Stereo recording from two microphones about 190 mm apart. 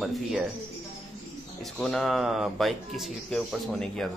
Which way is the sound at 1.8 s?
Centre (ahead or behind).